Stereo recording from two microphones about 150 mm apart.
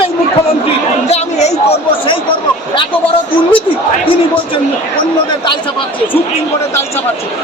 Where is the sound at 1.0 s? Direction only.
45° left (ahead or behind).